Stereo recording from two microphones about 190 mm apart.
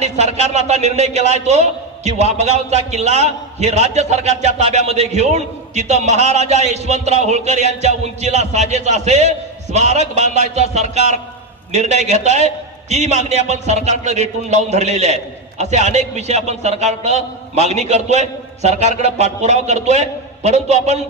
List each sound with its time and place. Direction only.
0.0 s a man's voice: 35° right (ahead or behind)